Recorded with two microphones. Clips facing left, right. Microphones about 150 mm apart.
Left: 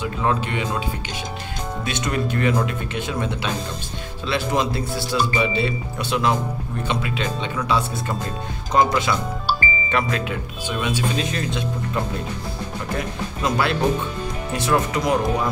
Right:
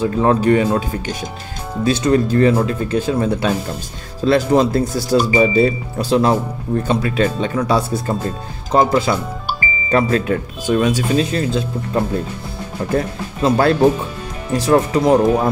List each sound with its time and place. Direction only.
0.0 s speech: 35° right (ahead or behind)